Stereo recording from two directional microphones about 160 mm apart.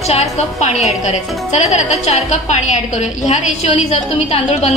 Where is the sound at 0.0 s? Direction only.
40° left (ahead or behind).